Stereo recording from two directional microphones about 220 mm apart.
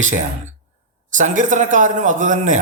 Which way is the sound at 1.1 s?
35° right (ahead or behind).